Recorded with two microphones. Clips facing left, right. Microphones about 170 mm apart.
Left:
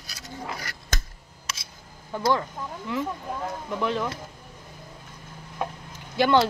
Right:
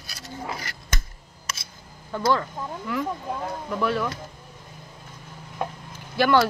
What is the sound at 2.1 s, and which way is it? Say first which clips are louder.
Speech: right 1 dB; 15° left (ahead or behind).